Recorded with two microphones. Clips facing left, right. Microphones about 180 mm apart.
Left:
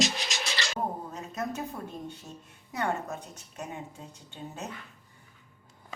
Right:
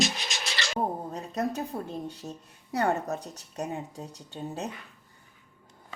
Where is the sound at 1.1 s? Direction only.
35° right (ahead or behind).